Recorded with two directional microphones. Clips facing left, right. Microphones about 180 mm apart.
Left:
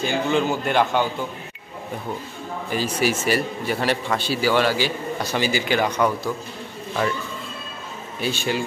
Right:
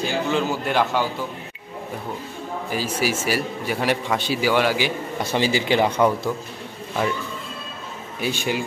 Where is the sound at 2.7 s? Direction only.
5° right (ahead or behind); by 6.3 s 25° right (ahead or behind).